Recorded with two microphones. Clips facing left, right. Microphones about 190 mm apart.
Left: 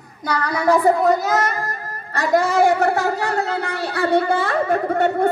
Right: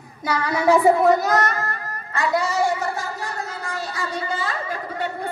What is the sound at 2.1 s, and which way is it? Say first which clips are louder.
A woman's voice: left 4 dB; 45° left (ahead or behind).